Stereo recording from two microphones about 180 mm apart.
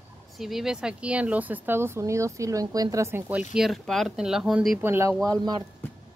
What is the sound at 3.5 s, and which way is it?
Speech, centre (ahead or behind).